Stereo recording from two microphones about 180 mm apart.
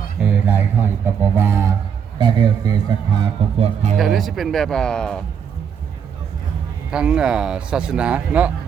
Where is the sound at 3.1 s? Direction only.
30° right (ahead or behind).